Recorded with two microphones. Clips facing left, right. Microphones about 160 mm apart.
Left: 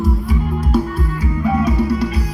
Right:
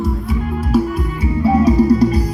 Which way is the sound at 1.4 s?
35° right (ahead or behind).